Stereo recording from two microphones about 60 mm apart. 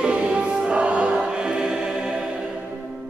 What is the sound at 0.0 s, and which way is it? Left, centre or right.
Music, centre.